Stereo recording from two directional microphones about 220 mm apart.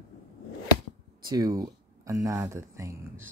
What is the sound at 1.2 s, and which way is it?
Speech, 15° right (ahead or behind).